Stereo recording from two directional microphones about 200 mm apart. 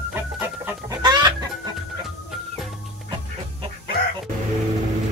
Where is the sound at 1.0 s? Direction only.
20° right (ahead or behind).